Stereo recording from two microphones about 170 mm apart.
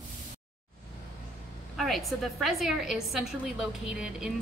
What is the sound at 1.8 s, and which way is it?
A woman's voice, centre (ahead or behind).